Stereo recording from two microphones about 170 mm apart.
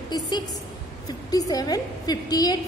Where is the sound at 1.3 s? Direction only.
20° left (ahead or behind).